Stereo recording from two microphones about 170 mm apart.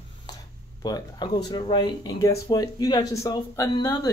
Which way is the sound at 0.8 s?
25° left (ahead or behind).